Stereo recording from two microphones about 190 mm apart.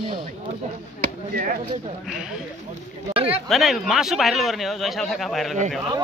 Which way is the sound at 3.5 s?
Centre (ahead or behind).